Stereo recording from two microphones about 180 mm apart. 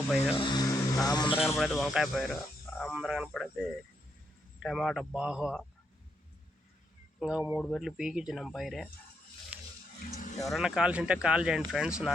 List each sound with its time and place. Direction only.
0.3 s vehicle: 25° left (ahead or behind)
1.0 s speech: 25° left (ahead or behind)
1.5 s speech: centre (ahead or behind)
4.6 s speech: centre (ahead or behind)
7.2 s speech: 5° right (ahead or behind)
10.2 s speech: 45° left (ahead or behind)
10.4 s speech: centre (ahead or behind)